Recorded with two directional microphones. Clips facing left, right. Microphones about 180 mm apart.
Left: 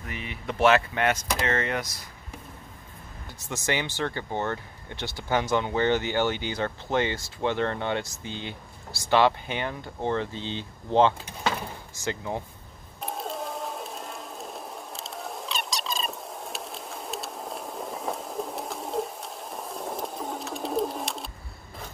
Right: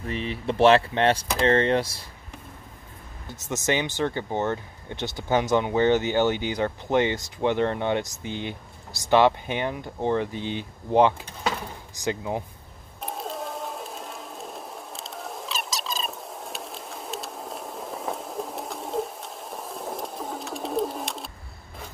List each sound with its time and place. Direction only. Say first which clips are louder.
0.0 s speech: right 7 dB; 30° right (ahead or behind)
3.3 s speech: right 4 dB; 20° right (ahead or behind)
13.0 s a sound: even; centre (ahead or behind)